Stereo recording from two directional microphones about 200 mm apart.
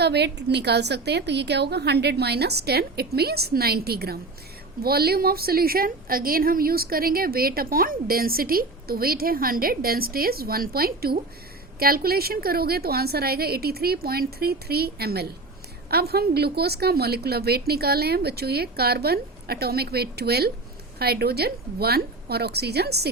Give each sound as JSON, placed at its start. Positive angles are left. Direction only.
{"t": 0.0, "sound": "a woman's voice", "side_deg": -55}